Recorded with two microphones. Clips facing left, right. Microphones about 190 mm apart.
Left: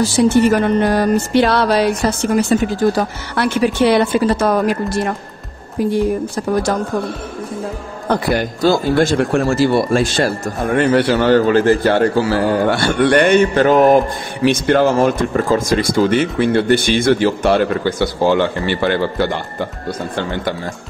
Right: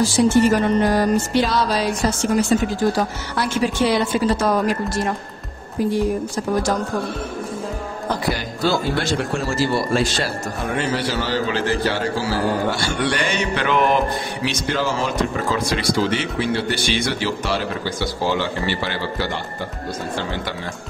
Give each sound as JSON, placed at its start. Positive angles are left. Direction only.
{"t": 0.0, "sound": "speech", "side_deg": 60}
{"t": 8.6, "sound": "speech", "side_deg": 50}